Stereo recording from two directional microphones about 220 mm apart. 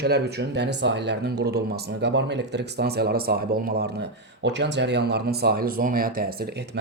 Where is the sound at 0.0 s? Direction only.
50° right (ahead or behind).